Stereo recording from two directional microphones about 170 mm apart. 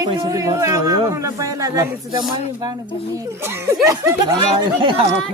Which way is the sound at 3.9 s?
20° right (ahead or behind).